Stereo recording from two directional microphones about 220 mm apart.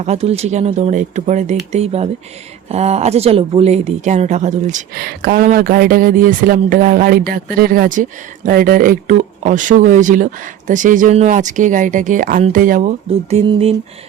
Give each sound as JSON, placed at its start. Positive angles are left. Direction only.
{"t": 0.0, "sound": "a woman's voice", "side_deg": -30}
{"t": 1.7, "sound": "mantra", "side_deg": -30}
{"t": 2.6, "sound": "a woman's voice", "side_deg": -30}
{"t": 13.1, "sound": "mantra", "side_deg": -25}